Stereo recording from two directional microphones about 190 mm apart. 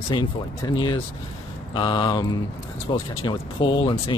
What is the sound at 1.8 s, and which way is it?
Speech, 25° left (ahead or behind).